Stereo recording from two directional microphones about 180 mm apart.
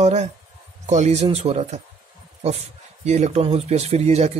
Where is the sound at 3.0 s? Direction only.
40° right (ahead or behind).